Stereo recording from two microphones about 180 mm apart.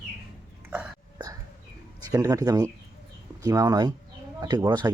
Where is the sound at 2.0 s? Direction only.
20° right (ahead or behind).